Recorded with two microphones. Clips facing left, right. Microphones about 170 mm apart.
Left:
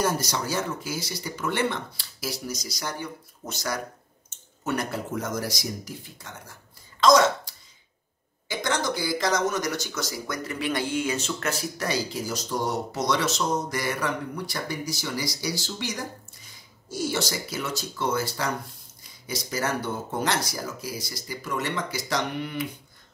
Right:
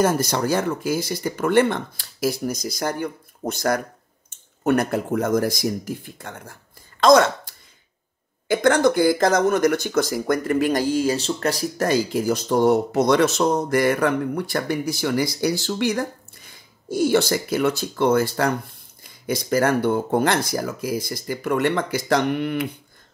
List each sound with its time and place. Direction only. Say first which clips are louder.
0.0 s speech: right 7 dB; 55° right (ahead or behind)